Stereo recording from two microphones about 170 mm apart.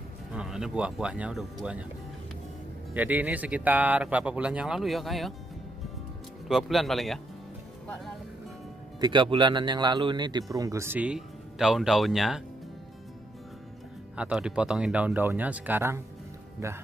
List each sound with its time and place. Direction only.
0.3 s speech: 5° right (ahead or behind)
2.9 s speech: 10° right (ahead or behind)
6.4 s speech: centre (ahead or behind)
9.0 s speech: 30° right (ahead or behind); by 12.4 s centre (ahead or behind)
14.1 s speech: 5° right (ahead or behind)